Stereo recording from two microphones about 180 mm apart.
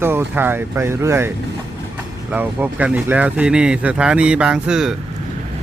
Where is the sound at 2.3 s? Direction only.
10° right (ahead or behind).